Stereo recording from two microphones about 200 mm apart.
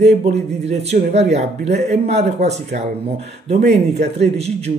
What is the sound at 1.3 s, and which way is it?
Speech, 35° right (ahead or behind).